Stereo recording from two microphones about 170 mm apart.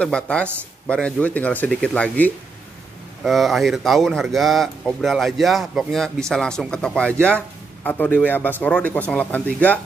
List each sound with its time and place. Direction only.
0.0 s speech: 5° left (ahead or behind)